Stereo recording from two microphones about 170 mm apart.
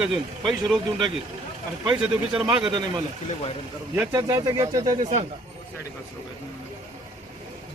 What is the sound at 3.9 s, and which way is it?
Speech, 15° right (ahead or behind).